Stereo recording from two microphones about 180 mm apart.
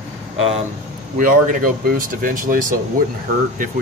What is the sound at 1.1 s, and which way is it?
Speech, 50° right (ahead or behind).